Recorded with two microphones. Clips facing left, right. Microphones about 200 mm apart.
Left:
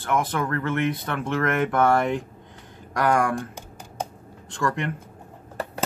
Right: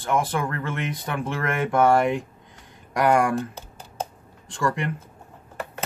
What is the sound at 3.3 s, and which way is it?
Typing, 15° left (ahead or behind).